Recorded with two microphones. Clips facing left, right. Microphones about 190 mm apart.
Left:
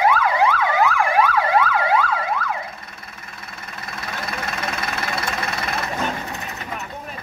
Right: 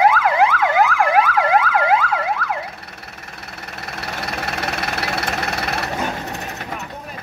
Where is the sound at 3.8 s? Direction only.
70° right (ahead or behind).